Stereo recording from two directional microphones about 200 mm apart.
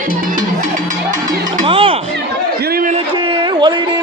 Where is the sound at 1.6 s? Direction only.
25° right (ahead or behind).